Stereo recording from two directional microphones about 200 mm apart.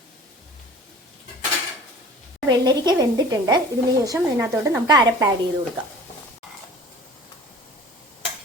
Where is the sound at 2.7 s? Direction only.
20° right (ahead or behind).